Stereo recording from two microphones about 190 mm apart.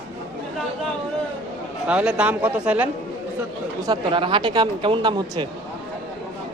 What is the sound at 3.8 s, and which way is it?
Speech, 25° right (ahead or behind).